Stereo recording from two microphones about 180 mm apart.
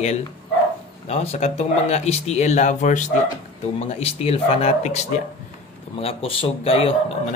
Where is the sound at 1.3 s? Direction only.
35° left (ahead or behind).